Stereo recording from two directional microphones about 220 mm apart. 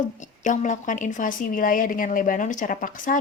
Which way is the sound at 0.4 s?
35° left (ahead or behind).